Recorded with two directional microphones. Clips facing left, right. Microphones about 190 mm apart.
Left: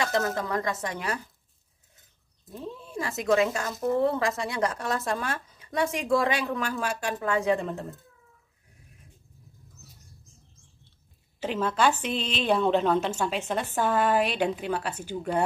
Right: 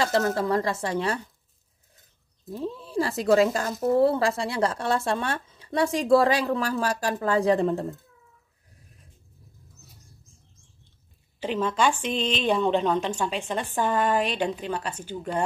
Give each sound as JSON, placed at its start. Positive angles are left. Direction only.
{"t": 0.0, "sound": "speech", "side_deg": -35}
{"t": 2.8, "sound": "speech", "side_deg": -35}
{"t": 11.3, "sound": "a woman's voice", "side_deg": 5}